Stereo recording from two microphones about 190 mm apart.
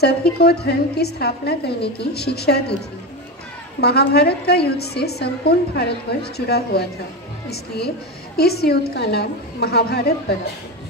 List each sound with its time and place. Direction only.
0.0 s a woman's voice: 55° left (ahead or behind)
3.8 s a woman's voice: 55° left (ahead or behind)